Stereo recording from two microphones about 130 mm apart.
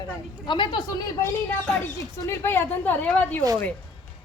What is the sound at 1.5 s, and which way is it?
Speech, 5° left (ahead or behind).